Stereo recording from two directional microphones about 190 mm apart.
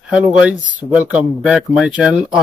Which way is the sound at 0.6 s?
45° right (ahead or behind).